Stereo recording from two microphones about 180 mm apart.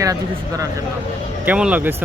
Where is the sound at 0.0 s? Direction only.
20° right (ahead or behind).